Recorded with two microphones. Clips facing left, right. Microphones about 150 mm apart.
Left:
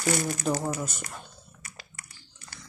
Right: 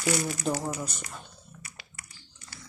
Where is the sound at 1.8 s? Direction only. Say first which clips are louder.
Left 2 dB; 40° left (ahead or behind).